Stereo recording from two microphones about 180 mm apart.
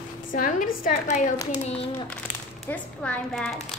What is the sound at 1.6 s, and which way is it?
Speech, 35° left (ahead or behind).